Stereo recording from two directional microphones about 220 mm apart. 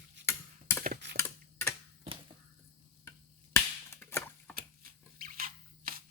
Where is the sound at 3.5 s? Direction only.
10° left (ahead or behind).